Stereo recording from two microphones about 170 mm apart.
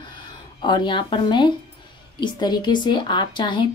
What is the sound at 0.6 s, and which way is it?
Speech, 25° left (ahead or behind).